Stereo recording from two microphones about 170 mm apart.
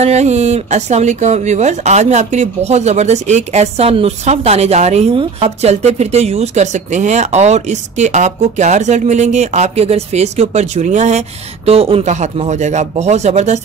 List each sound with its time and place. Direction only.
0.0 s speech: 40° right (ahead or behind)